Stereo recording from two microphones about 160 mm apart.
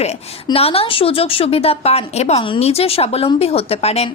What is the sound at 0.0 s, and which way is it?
A woman's voice, 40° left (ahead or behind).